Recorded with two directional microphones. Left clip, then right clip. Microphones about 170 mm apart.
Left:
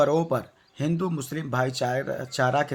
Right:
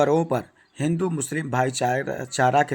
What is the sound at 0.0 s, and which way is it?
Speech, 15° right (ahead or behind).